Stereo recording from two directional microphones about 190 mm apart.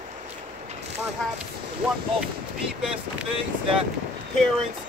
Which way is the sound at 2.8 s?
5° right (ahead or behind).